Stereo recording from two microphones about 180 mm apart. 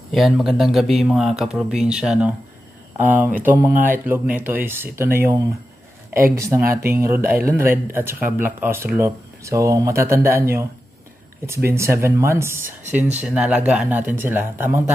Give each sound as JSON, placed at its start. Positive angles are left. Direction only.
{"t": 0.1, "sound": "speech", "side_deg": 0}